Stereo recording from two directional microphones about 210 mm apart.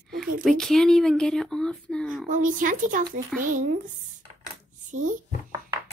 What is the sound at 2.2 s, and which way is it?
Speech, 40° right (ahead or behind).